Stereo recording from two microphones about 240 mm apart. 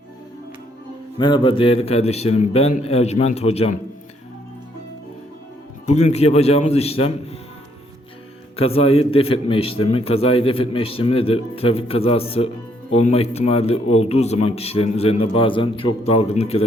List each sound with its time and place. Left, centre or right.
1.2 s a man's voice: centre
5.8 s a man's voice: left
8.5 s a man's voice: left